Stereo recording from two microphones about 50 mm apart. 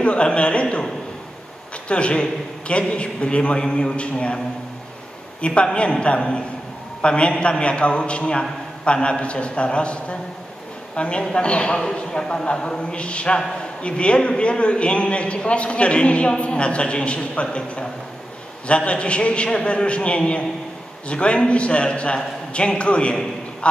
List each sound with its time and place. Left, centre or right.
0.0 s a man's voice: left
1.9 s a man's voice: left
5.4 s a man's voice: left